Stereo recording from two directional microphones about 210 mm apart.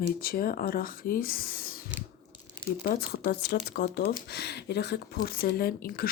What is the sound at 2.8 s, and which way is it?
Speech, 45° left (ahead or behind).